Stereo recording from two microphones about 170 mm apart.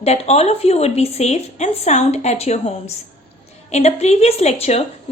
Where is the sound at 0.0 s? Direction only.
40° left (ahead or behind).